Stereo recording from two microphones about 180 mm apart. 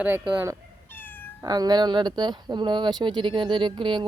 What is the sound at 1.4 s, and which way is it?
Speech, 20° right (ahead or behind).